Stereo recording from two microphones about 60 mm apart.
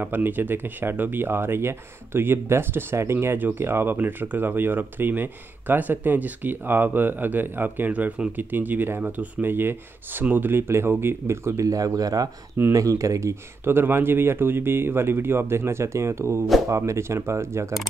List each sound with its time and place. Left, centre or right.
0.0 s speech: right
3.3 s speech: right
11.6 s speech: right
12.7 s speech: right
13.7 s speech: right